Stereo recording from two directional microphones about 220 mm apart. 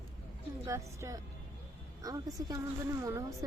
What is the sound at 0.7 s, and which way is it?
A woman's voice, 15° right (ahead or behind).